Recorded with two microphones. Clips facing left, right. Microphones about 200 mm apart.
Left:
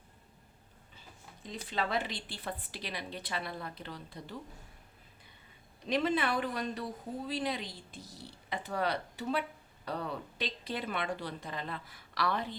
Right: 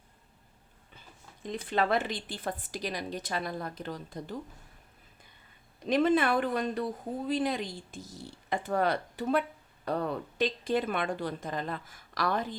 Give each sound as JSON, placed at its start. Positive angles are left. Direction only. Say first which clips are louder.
{"t": 1.5, "sound": "speech", "louder": "right 7 dB", "side_deg": -55}
{"t": 5.8, "sound": "speech", "louder": "right 6 dB", "side_deg": -50}